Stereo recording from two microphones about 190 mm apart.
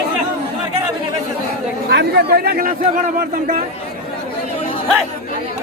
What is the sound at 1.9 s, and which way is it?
A man's voice, 60° right (ahead or behind).